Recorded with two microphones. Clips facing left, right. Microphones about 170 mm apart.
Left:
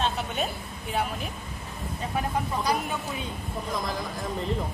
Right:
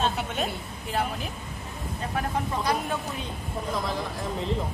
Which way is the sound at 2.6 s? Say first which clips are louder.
Even; centre (ahead or behind).